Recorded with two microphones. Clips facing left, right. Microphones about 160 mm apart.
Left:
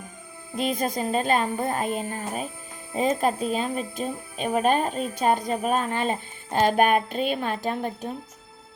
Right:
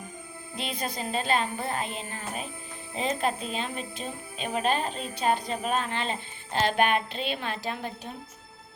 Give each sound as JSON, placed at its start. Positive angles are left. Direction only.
{"t": 0.5, "sound": "speech", "side_deg": 45}